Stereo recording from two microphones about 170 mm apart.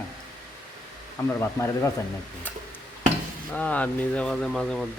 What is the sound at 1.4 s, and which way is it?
Speech, 15° left (ahead or behind).